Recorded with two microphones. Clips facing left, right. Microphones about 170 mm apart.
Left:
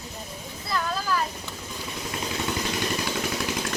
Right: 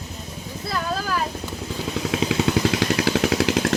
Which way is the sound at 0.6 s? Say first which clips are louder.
Right 2 dB; 55° right (ahead or behind).